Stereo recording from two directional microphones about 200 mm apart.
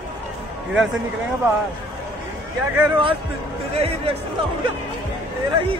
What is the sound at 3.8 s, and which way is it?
Speech, 30° right (ahead or behind).